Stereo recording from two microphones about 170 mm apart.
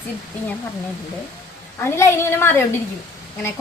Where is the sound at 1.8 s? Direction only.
15° left (ahead or behind).